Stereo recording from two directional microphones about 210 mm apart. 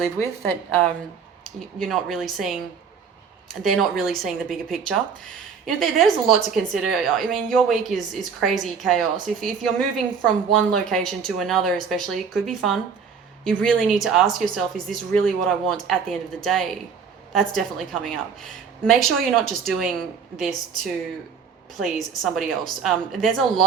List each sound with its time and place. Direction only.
1.5 s speech: centre (ahead or behind)
22.2 s speech: centre (ahead or behind)